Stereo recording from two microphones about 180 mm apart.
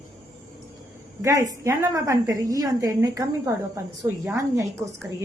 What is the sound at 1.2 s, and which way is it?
A woman's voice, 20° right (ahead or behind).